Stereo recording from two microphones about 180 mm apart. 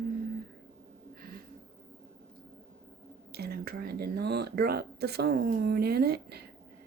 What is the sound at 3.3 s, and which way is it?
Speech, 60° right (ahead or behind).